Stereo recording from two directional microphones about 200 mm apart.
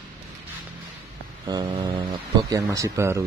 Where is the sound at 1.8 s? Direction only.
25° right (ahead or behind).